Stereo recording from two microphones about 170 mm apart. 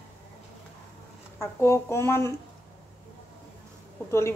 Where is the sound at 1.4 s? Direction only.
15° left (ahead or behind).